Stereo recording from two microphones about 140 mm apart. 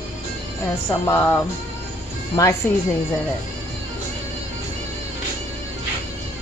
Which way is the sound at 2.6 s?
15° left (ahead or behind).